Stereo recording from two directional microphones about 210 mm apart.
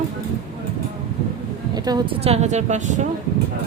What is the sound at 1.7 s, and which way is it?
A woman's voice, 20° right (ahead or behind).